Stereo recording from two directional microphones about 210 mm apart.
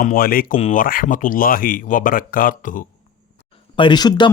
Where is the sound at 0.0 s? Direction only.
45° left (ahead or behind).